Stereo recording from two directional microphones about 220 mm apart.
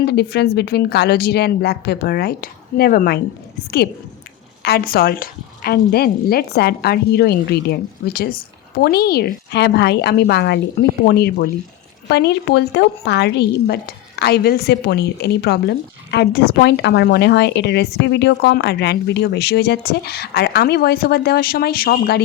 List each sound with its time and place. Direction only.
0.0 s speech: 50° left (ahead or behind)
4.6 s speech: 45° left (ahead or behind)